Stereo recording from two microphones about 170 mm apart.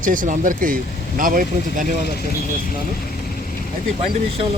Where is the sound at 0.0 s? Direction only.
50° right (ahead or behind).